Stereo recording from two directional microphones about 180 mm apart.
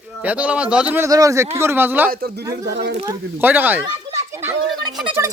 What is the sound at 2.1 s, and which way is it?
Speech, 60° right (ahead or behind).